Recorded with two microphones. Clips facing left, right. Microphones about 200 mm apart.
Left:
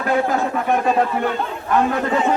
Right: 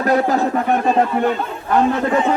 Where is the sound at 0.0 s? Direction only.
40° right (ahead or behind).